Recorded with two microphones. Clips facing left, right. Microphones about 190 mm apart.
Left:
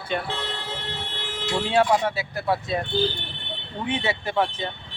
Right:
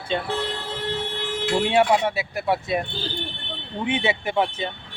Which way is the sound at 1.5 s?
20° right (ahead or behind).